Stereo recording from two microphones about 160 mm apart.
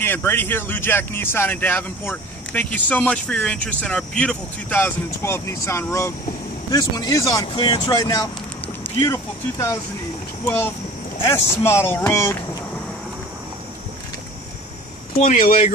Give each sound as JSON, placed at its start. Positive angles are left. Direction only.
{"t": 0.0, "sound": "speech", "side_deg": 15}
{"t": 15.1, "sound": "speech", "side_deg": 55}